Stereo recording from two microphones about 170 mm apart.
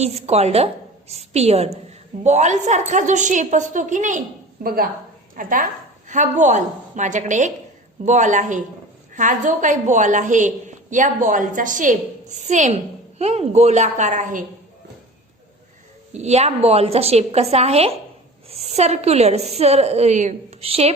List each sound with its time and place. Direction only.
0.0 s a woman's voice: 40° right (ahead or behind)
4.6 s a woman's voice: 60° right (ahead or behind); by 14.4 s 45° right (ahead or behind)
16.1 s a woman's voice: 40° right (ahead or behind)